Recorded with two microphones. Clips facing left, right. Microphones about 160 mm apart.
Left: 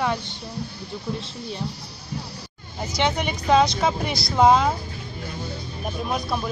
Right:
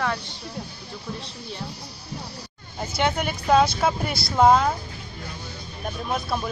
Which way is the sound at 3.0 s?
5° right (ahead or behind).